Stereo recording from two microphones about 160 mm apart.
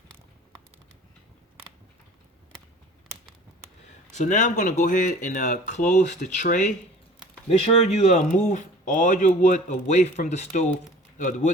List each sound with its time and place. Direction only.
4.1 s speech: 50° left (ahead or behind)
7.6 s speech: 40° left (ahead or behind)